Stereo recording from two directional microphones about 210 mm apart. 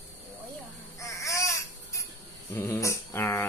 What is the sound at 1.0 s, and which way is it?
Baby cry, 15° left (ahead or behind).